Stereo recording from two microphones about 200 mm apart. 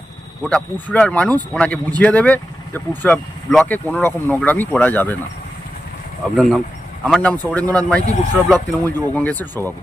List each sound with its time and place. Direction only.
0.4 s speech: 5° left (ahead or behind)
6.3 s speech: centre (ahead or behind)
8.5 s speech: 20° right (ahead or behind)
9.1 s speech: 10° left (ahead or behind)